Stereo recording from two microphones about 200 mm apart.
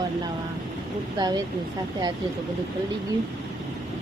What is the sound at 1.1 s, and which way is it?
Speech, 20° right (ahead or behind).